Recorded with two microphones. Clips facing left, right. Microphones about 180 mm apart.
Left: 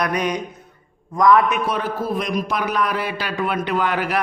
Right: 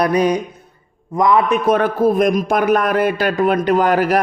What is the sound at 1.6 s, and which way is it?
A man's voice, 55° right (ahead or behind).